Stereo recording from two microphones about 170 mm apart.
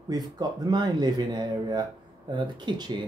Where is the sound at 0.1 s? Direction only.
25° right (ahead or behind).